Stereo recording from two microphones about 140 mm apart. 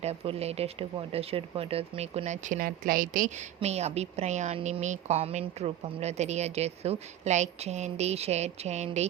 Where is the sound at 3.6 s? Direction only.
50° right (ahead or behind).